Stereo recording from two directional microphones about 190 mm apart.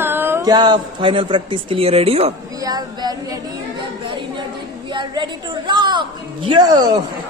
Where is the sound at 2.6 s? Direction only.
20° right (ahead or behind).